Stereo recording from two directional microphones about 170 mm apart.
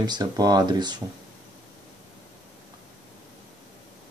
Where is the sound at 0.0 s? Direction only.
25° right (ahead or behind).